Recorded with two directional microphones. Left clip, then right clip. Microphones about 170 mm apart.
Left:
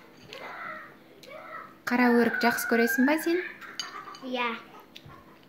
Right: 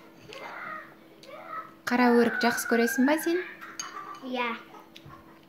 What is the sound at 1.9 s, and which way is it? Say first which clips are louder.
A child's voice: right 1 dB; centre (ahead or behind).